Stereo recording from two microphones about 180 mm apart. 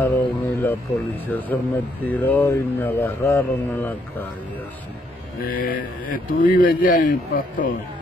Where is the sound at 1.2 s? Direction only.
10° left (ahead or behind).